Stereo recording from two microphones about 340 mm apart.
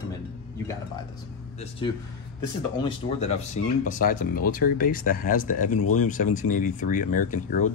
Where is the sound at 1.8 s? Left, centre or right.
Centre.